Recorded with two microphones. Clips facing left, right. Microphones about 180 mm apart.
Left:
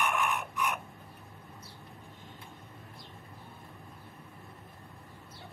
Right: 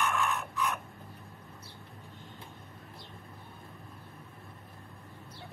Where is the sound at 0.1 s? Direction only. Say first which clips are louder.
Even; 15° left (ahead or behind).